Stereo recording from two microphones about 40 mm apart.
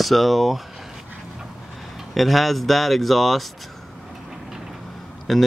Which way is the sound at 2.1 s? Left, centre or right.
Centre.